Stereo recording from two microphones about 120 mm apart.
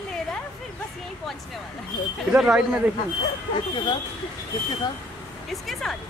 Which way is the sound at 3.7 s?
40° left (ahead or behind).